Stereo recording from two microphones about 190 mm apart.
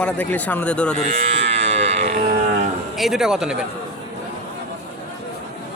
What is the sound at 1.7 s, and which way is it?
Livestock, 35° right (ahead or behind).